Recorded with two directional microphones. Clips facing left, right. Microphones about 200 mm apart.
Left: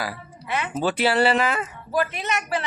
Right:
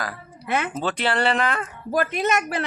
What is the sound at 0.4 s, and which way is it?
Speech, 50° right (ahead or behind).